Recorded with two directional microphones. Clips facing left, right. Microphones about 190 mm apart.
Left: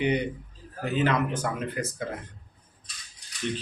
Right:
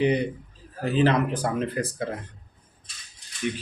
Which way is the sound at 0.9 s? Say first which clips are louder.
Right 4 dB; 35° right (ahead or behind).